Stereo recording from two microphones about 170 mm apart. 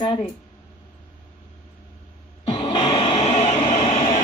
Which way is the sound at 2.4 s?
30° left (ahead or behind).